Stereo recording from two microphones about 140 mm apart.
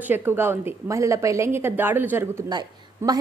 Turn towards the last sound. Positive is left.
turn(degrees=-30)  # may be behind; listen again after turning